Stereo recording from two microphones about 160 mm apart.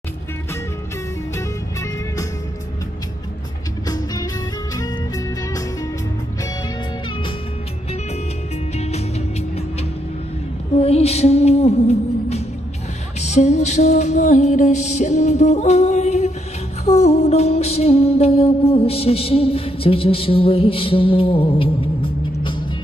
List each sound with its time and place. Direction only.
3.8 s music: 25° left (ahead or behind)
10.8 s music: 40° left (ahead or behind)